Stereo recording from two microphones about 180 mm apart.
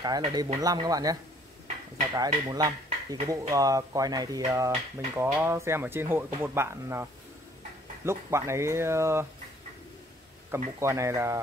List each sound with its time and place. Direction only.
0.0 s speech: 20° right (ahead or behind)
2.1 s speech: 20° right (ahead or behind)
10.5 s speech: 15° right (ahead or behind)